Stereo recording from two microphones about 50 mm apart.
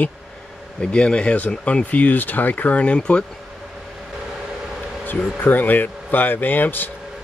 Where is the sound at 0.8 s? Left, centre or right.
Centre.